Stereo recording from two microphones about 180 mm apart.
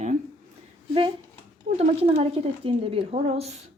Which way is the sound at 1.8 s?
35° right (ahead or behind).